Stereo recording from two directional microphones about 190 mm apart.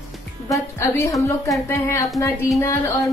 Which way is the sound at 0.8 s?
15° left (ahead or behind).